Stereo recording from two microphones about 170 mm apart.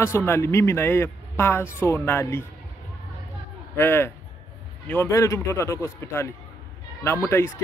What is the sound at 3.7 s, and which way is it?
A man's voice, 15° left (ahead or behind).